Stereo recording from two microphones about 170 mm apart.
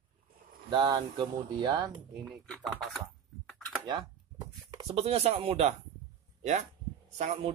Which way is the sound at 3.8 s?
25° right (ahead or behind).